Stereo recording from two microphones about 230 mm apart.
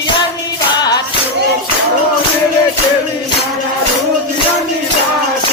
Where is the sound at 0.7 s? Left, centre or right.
Centre.